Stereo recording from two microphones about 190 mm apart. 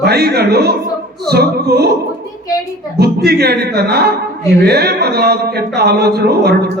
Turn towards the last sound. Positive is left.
turn(degrees=-55)  # may be behind; listen again after turning